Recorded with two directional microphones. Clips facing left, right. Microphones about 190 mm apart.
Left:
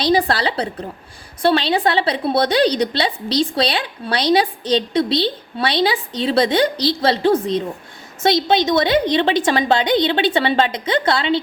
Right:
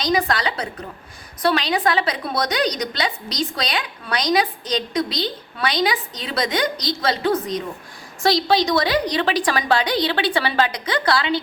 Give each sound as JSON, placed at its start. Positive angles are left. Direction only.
{"t": 0.0, "sound": "a woman's voice", "side_deg": 30}